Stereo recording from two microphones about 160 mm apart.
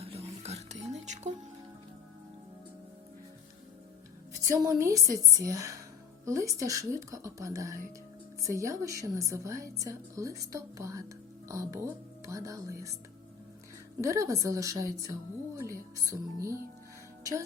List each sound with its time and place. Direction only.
0.0 s music: 40° right (ahead or behind)
4.5 s a woman's voice: 20° right (ahead or behind)
14.0 s a woman's voice: 20° right (ahead or behind)